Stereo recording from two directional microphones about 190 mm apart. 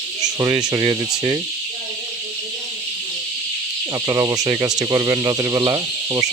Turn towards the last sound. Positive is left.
turn(degrees=-20)  # may be behind; listen again after turning